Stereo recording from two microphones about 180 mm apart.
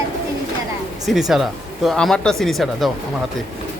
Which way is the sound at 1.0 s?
Centre (ahead or behind).